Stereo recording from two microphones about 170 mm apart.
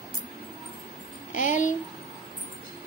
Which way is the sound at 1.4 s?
45° left (ahead or behind).